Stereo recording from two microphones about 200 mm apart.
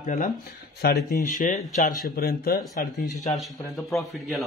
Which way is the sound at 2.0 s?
50° left (ahead or behind).